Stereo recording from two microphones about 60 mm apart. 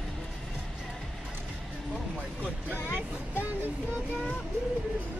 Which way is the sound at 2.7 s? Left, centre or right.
Left.